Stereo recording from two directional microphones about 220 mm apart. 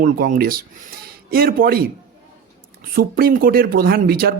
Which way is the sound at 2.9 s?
40° right (ahead or behind).